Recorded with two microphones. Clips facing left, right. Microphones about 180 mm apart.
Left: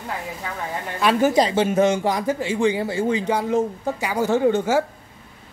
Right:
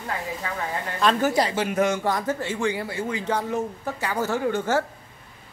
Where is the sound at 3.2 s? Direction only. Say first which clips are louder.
Left 5 dB; 15° left (ahead or behind).